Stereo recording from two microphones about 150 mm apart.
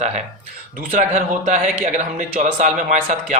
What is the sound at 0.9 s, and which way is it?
Speech, 55° right (ahead or behind).